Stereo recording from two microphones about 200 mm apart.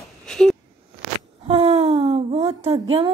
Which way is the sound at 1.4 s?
30° right (ahead or behind).